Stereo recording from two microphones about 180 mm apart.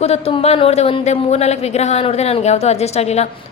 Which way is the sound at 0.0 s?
35° left (ahead or behind).